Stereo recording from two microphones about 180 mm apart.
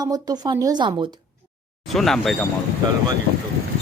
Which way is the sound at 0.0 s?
20° right (ahead or behind).